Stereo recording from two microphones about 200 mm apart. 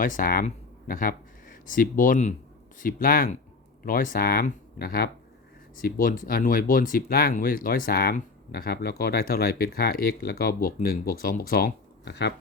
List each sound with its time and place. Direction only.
0.0 s speech: 45° left (ahead or behind)